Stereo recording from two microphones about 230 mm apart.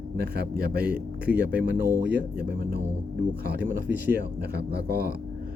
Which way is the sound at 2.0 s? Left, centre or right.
Right.